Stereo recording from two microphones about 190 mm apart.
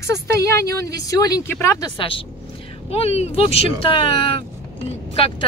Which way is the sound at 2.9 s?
35° left (ahead or behind).